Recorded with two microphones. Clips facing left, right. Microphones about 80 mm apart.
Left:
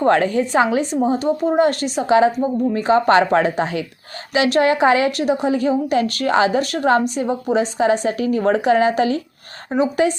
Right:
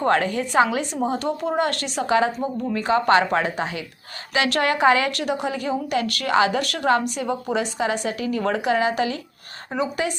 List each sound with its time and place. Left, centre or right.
0.0 s a woman's voice: left
4.4 s a woman's voice: left
9.7 s a woman's voice: left